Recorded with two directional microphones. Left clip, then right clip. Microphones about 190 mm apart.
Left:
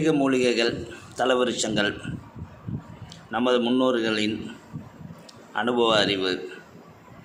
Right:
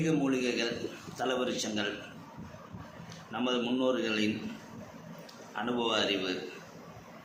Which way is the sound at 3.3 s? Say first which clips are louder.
Left 10 dB; 60° left (ahead or behind).